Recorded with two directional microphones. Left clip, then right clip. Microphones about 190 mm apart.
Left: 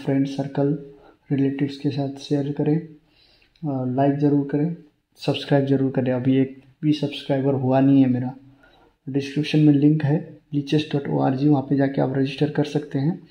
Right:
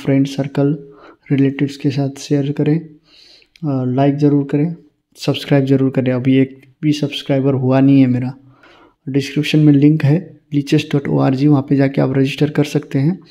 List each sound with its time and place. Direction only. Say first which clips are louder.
0.0 s speech: right 7 dB; 30° right (ahead or behind)